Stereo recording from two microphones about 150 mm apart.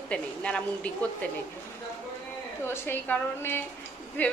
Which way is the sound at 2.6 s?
15° left (ahead or behind).